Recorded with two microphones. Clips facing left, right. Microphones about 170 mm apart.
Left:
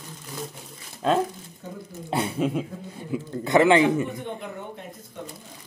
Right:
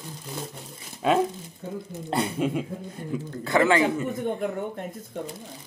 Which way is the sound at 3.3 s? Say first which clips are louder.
Left 4 dB; 20° left (ahead or behind).